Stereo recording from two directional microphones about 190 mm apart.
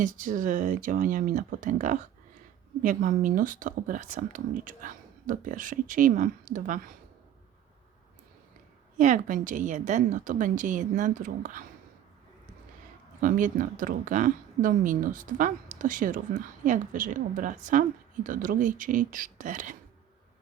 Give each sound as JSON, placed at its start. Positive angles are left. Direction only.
{"t": 0.0, "sound": "speech", "side_deg": -45}
{"t": 9.0, "sound": "speech", "side_deg": -40}
{"t": 13.2, "sound": "speech", "side_deg": -45}